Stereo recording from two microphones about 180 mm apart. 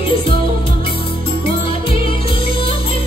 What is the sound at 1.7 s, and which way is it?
Music, 30° left (ahead or behind).